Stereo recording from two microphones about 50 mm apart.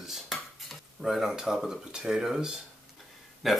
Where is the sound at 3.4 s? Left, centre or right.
Centre.